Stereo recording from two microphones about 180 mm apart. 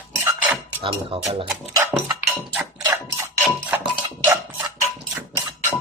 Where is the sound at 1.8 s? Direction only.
10° right (ahead or behind).